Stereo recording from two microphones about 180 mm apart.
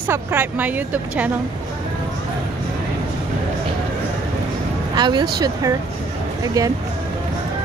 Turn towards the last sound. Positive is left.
turn(degrees=-20)  # may be behind; listen again after turning